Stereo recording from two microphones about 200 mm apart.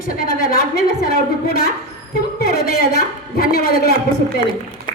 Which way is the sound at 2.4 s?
50° left (ahead or behind).